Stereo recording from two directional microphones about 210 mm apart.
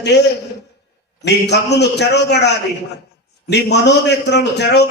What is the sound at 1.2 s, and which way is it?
A man's voice, 55° left (ahead or behind).